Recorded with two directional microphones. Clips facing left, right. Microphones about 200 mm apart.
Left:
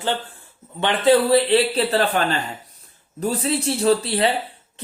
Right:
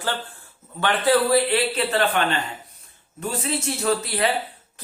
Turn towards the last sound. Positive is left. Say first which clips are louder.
# left 4 dB
turn(degrees=30)  # may be behind; listen again after turning